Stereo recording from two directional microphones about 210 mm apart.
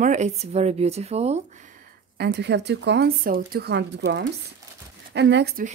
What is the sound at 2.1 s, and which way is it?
Speech, 50° right (ahead or behind).